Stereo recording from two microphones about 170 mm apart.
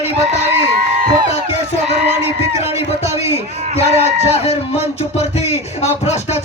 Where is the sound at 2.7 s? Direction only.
40° left (ahead or behind).